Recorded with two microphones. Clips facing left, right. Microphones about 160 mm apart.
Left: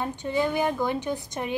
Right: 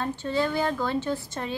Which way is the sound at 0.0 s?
15° left (ahead or behind).